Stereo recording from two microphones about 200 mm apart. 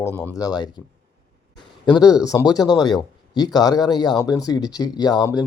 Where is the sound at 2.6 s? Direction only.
Centre (ahead or behind).